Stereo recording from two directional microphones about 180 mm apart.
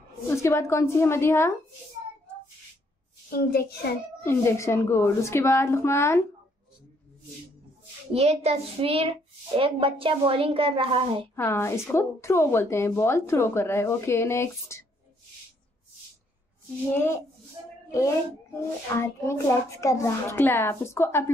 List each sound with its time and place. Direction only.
0.3 s a woman's voice: 15° left (ahead or behind)
3.3 s a child's voice: 60° left (ahead or behind)
4.2 s a woman's voice: 15° left (ahead or behind)
8.1 s a woman's voice: 35° right (ahead or behind)
11.3 s a woman's voice: 15° left (ahead or behind)
16.9 s a woman's voice: 10° left (ahead or behind)
18.9 s a woman's voice: 15° left (ahead or behind)